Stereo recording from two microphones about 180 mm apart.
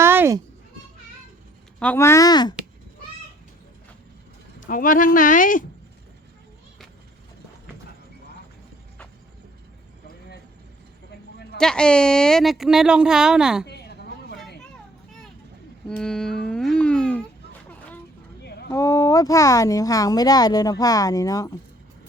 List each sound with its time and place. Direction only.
0.0 s a sound: 10° right (ahead or behind)
1.8 s speech: 10° left (ahead or behind)
4.6 s speech: 50° left (ahead or behind)
11.5 s speech: 5° left (ahead or behind)
13.7 s a sound: 65° left (ahead or behind)
15.9 s music: 5° left (ahead or behind)
17.7 s vehicle: 10° left (ahead or behind)
18.4 s a sound: 65° left (ahead or behind)
18.7 s speech: 15° left (ahead or behind)